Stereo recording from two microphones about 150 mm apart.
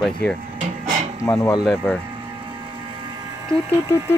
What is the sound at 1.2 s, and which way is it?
Speech, 20° left (ahead or behind).